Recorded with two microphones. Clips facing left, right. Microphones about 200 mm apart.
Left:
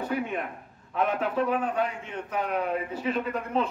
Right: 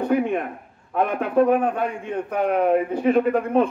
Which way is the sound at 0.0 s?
55° right (ahead or behind).